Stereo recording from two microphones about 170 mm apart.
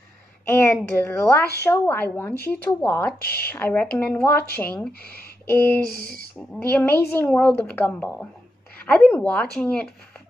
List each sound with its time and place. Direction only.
0.5 s a woman's voice: 15° left (ahead or behind)
5.0 s speech: 65° left (ahead or behind)
5.5 s a woman's voice: 10° left (ahead or behind)
5.9 s speech: 55° right (ahead or behind)
6.5 s a woman's voice: 10° left (ahead or behind)